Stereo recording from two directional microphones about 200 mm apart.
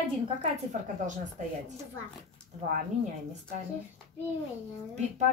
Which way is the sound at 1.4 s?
40° right (ahead or behind).